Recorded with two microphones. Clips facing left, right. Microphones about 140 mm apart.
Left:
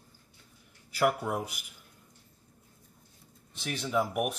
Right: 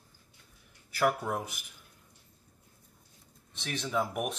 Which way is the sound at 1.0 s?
15° left (ahead or behind).